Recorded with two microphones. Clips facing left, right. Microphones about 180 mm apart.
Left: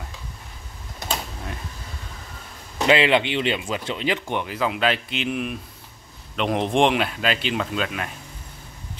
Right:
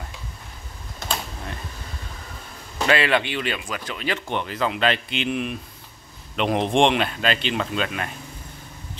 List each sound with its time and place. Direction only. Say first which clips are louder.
2.9 s speech: left 3 dB; 20° left (ahead or behind); by 8.1 s centre (ahead or behind)